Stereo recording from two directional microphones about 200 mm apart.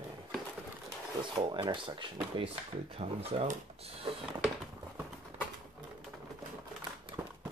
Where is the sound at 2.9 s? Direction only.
30° right (ahead or behind).